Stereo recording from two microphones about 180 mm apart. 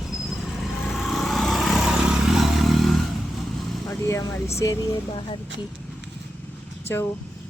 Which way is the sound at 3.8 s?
15° left (ahead or behind).